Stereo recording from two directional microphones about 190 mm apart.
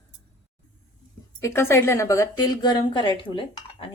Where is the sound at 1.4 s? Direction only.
15° left (ahead or behind).